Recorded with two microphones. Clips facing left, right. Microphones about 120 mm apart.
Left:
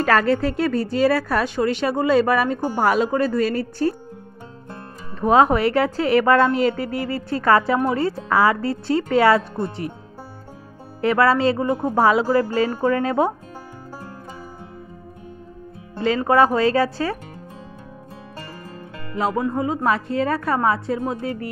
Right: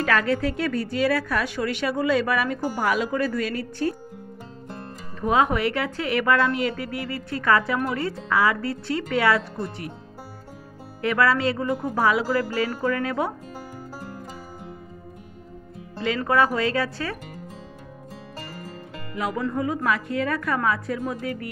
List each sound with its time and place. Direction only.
0.0 s a woman's voice: 40° left (ahead or behind)
5.2 s a woman's voice: 35° left (ahead or behind)
11.0 s speech: 30° left (ahead or behind)
16.2 s a woman's voice: 25° left (ahead or behind)
19.1 s a woman's voice: 30° left (ahead or behind)